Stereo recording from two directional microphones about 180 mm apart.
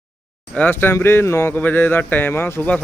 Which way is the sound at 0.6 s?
10° left (ahead or behind).